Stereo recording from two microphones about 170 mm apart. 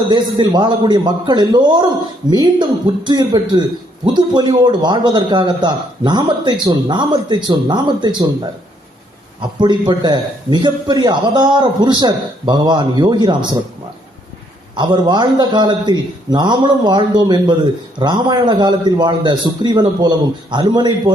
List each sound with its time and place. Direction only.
0.1 s a man's voice: 25° right (ahead or behind)
9.4 s a man's voice: 25° right (ahead or behind)
14.8 s a man's voice: 25° right (ahead or behind)